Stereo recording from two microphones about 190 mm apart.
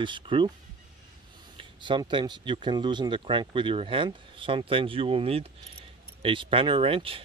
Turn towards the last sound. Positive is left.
turn(degrees=-30)  # may be behind; listen again after turning